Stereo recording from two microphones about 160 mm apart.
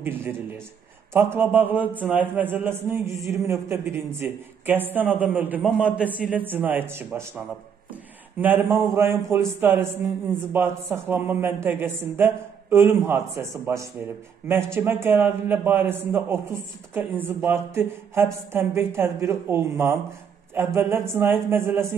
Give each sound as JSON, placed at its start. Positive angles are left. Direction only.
{"t": 0.0, "sound": "a man's voice", "side_deg": -15}